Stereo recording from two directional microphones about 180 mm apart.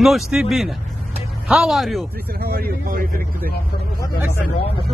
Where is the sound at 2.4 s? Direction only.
60° right (ahead or behind).